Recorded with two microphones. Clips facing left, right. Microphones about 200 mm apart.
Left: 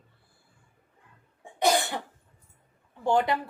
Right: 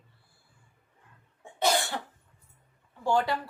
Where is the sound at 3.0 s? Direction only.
20° left (ahead or behind).